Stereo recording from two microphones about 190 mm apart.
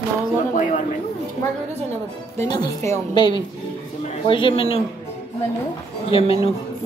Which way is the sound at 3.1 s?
25° left (ahead or behind).